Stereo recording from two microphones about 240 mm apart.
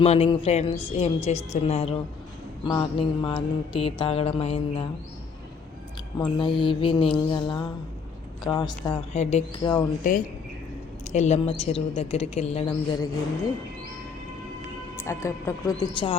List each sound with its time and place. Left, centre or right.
0.0 s mantra: left
6.1 s mantra: centre
8.4 s speech: centre
10.0 s speech: left
11.1 s mantra: left
14.9 s speech: centre